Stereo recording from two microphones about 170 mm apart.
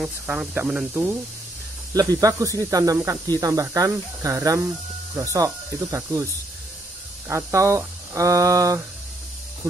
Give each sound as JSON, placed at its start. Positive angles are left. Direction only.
{"t": 0.0, "sound": "speech", "side_deg": -10}
{"t": 2.0, "sound": "speech", "side_deg": -20}
{"t": 7.2, "sound": "speech", "side_deg": -15}